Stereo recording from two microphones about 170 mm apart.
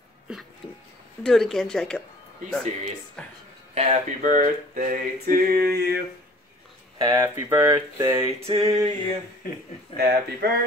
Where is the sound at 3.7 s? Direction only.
40° right (ahead or behind); by 6.0 s 70° right (ahead or behind).